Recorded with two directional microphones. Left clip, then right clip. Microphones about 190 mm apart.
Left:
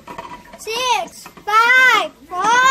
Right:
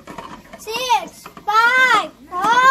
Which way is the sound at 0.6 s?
35° left (ahead or behind).